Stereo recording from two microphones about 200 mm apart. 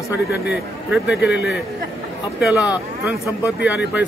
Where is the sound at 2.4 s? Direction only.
5° right (ahead or behind).